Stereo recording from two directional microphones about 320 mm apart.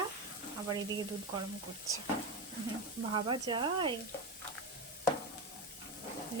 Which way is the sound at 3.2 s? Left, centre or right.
Centre.